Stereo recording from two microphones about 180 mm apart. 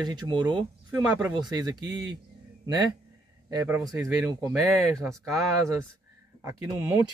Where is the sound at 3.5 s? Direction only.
20° right (ahead or behind).